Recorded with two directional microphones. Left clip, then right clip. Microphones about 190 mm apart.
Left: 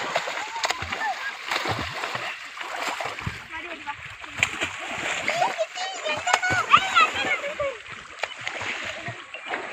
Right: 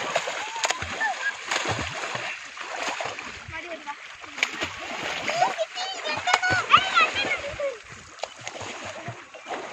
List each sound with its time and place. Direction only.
0.0 s splash: 10° right (ahead or behind)
2.7 s boat: 5° right (ahead or behind)
4.4 s splash: 5° right (ahead or behind)
5.2 s splash: 10° left (ahead or behind)
6.0 s a sound: 40° left (ahead or behind)
8.2 s splash: 20° left (ahead or behind)